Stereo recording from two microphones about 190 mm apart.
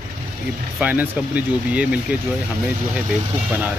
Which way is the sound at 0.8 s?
5° right (ahead or behind).